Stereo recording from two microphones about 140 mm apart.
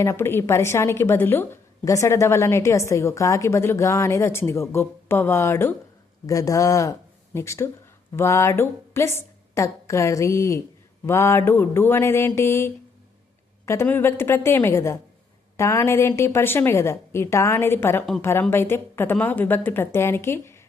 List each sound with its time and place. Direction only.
0.0 s a woman's voice: 20° left (ahead or behind)